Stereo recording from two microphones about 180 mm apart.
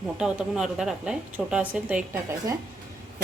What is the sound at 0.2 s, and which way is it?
A woman's voice, 5° right (ahead or behind).